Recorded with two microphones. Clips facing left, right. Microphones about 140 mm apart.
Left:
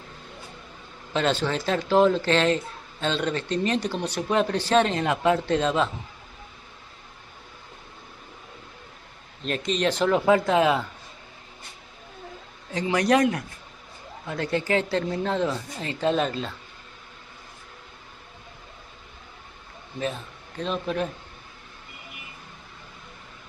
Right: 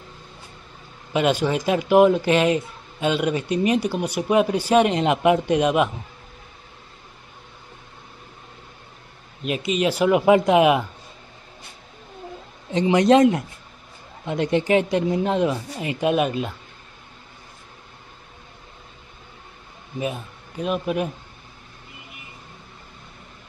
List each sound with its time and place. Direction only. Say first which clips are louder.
1.1 s speech: right 4 dB; 15° right (ahead or behind)
9.4 s speech: right 3 dB; 10° right (ahead or behind)
12.7 s speech: right 6 dB; 20° right (ahead or behind)
20.0 s speech: right 2 dB; 10° right (ahead or behind)